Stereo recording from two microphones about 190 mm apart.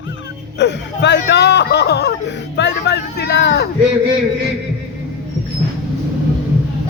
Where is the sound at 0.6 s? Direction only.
65° left (ahead or behind).